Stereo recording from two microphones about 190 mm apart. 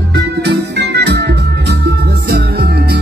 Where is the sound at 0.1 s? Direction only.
60° right (ahead or behind).